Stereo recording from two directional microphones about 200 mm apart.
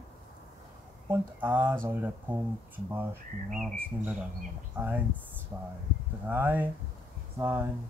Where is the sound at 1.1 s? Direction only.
10° right (ahead or behind).